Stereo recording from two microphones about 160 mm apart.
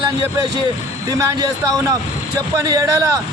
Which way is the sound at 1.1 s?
25° right (ahead or behind).